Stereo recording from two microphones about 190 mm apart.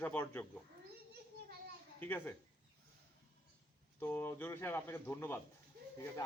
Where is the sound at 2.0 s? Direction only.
10° left (ahead or behind).